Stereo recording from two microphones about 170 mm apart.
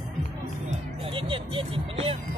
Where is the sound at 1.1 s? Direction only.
30° right (ahead or behind).